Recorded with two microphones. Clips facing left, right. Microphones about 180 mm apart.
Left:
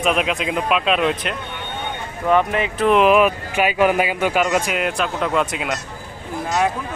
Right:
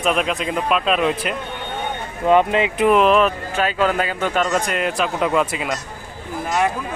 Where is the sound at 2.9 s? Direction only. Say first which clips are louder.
Left 2 dB; 5° left (ahead or behind).